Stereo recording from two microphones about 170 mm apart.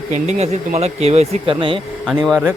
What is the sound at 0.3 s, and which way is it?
Speech, 40° right (ahead or behind).